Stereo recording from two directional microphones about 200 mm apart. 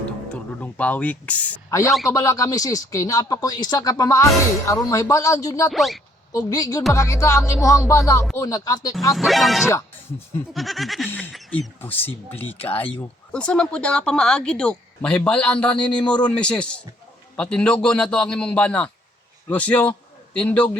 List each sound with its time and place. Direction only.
0.6 s speech: 5° left (ahead or behind)
5.7 s speech: centre (ahead or behind)
6.3 s speech: 20° left (ahead or behind)
9.1 s speech: centre (ahead or behind)
9.6 s speech: 15° left (ahead or behind)
10.5 s a man's voice: centre (ahead or behind)